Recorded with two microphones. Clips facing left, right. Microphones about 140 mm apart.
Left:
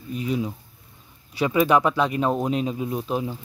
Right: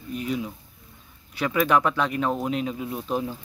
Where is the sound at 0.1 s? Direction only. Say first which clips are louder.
Left 3 dB; 25° left (ahead or behind).